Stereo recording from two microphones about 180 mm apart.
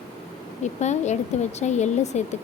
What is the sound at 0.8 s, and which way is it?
Speech, 40° left (ahead or behind).